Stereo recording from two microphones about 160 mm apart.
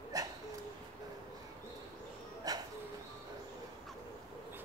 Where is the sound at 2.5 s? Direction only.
25° right (ahead or behind).